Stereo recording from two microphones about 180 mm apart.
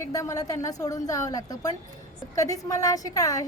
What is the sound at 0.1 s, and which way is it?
A woman's voice, 20° left (ahead or behind).